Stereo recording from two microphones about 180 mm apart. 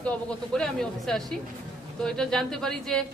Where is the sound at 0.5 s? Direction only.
5° left (ahead or behind).